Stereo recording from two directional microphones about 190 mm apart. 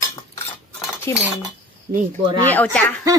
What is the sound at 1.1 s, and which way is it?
Speech, 15° left (ahead or behind).